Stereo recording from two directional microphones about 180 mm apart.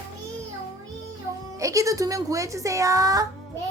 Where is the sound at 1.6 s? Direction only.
20° right (ahead or behind).